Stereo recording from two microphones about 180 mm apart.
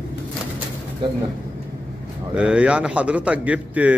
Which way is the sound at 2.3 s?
5° right (ahead or behind).